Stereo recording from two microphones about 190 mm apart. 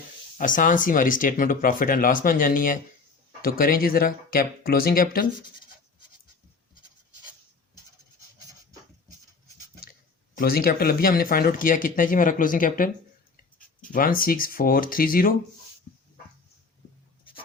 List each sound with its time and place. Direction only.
0.3 s speech: 45° left (ahead or behind)
10.3 s speech: 50° left (ahead or behind)